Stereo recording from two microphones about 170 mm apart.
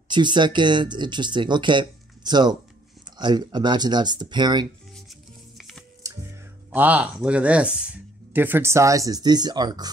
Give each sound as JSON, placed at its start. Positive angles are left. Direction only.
{"t": 0.1, "sound": "speech", "side_deg": -25}
{"t": 5.6, "sound": "music", "side_deg": 0}
{"t": 6.7, "sound": "speech", "side_deg": -10}